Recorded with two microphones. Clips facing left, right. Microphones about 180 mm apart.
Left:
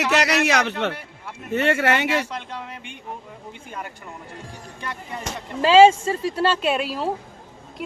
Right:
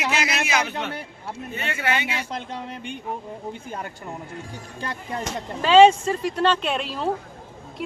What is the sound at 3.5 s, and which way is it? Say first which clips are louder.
Speech: right 2 dB; 35° right (ahead or behind).